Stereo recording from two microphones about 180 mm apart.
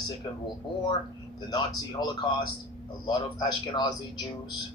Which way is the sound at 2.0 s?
25° left (ahead or behind).